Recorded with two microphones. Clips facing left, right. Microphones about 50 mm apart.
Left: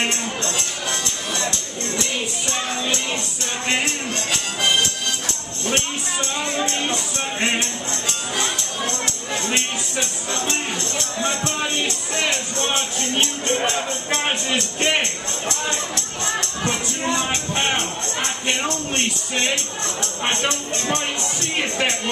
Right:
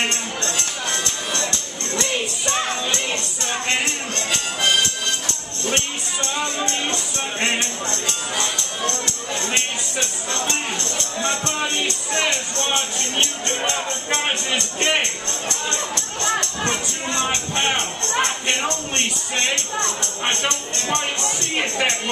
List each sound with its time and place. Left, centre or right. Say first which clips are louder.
0.0 s music: even; centre